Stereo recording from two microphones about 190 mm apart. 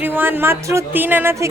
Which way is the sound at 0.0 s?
10° right (ahead or behind).